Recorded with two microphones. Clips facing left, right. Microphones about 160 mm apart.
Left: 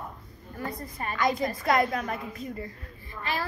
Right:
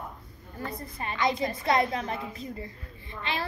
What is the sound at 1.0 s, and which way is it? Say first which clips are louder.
A child's voice: left 1 dB; 25° right (ahead or behind).